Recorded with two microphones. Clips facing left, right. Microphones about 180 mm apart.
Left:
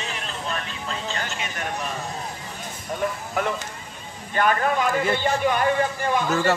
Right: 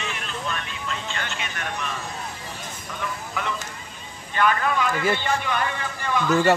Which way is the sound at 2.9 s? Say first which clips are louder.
Left 5 dB; 45° left (ahead or behind).